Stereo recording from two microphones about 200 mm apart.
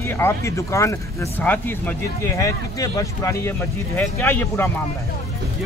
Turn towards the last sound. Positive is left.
turn(degrees=10)  # may be behind; listen again after turning